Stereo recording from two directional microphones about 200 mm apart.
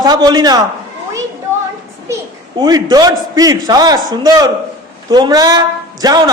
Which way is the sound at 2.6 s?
20° right (ahead or behind).